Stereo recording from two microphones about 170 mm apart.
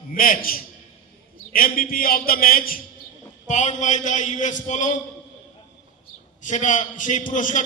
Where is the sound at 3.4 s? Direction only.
45° left (ahead or behind).